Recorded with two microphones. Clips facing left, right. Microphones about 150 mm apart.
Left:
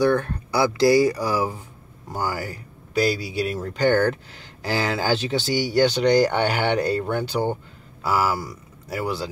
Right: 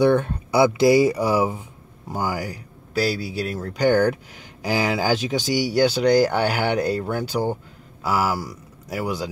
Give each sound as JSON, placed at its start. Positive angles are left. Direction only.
{"t": 0.0, "sound": "speech", "side_deg": -20}
{"t": 3.0, "sound": "a man's voice", "side_deg": 0}
{"t": 3.7, "sound": "speech", "side_deg": -10}